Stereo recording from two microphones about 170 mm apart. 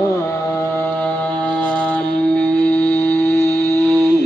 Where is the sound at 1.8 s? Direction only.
5° left (ahead or behind).